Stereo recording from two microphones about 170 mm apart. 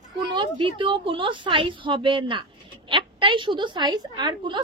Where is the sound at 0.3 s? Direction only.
30° right (ahead or behind).